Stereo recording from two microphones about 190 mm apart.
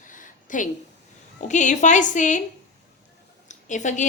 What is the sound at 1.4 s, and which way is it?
A woman's voice, 40° left (ahead or behind).